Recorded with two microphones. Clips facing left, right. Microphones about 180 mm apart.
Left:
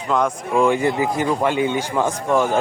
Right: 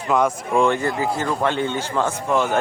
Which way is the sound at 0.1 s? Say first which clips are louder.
Right 1 dB; centre (ahead or behind).